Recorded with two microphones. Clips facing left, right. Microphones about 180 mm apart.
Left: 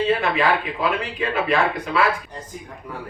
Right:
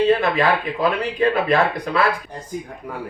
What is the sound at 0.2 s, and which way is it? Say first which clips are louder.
Speech: right 2 dB; 35° right (ahead or behind).